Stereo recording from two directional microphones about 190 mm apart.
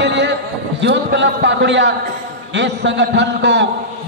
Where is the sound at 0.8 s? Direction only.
65° right (ahead or behind).